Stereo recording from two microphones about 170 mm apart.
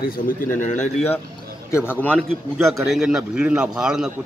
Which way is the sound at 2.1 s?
Centre (ahead or behind).